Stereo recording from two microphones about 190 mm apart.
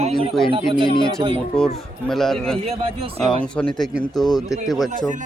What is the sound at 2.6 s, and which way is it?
Speech, 35° right (ahead or behind).